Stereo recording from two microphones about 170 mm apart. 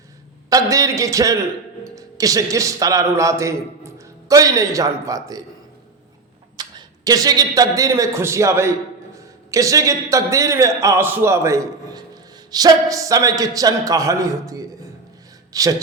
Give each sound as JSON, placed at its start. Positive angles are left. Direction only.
{"t": 0.5, "sound": "a man's voice", "side_deg": -20}
{"t": 6.6, "sound": "a man's voice", "side_deg": -25}